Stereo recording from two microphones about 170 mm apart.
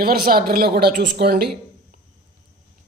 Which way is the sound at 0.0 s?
65° right (ahead or behind).